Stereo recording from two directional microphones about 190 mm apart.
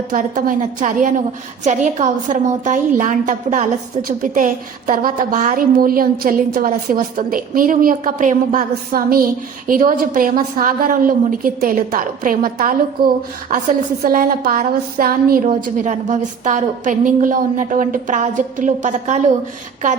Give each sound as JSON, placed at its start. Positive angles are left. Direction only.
{"t": 0.1, "sound": "a woman's voice", "side_deg": -45}